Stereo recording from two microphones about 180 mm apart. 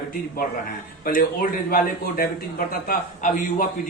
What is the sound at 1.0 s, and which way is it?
A man's voice, 50° left (ahead or behind).